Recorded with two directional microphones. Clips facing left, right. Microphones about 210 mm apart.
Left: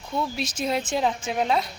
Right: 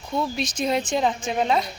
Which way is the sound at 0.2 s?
5° left (ahead or behind).